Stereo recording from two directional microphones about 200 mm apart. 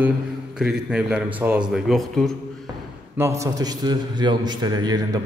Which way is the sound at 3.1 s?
15° right (ahead or behind).